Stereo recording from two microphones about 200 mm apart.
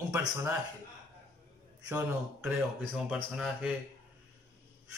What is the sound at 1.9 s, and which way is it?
Speech, 5° right (ahead or behind).